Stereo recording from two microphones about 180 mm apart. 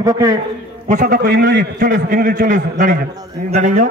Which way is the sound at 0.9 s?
45° right (ahead or behind).